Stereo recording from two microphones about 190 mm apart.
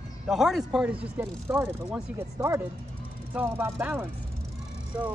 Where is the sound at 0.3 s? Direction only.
Centre (ahead or behind).